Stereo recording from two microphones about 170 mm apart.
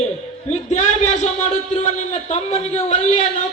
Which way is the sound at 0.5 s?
40° left (ahead or behind).